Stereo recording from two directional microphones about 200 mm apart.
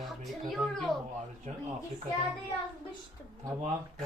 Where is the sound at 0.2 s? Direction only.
Centre (ahead or behind).